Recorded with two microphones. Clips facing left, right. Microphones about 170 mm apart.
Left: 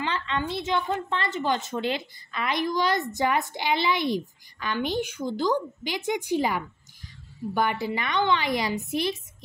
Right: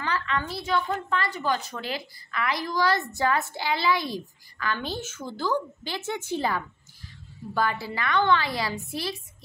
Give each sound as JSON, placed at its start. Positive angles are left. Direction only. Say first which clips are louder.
{"t": 0.0, "sound": "a woman's voice", "louder": "even", "side_deg": 20}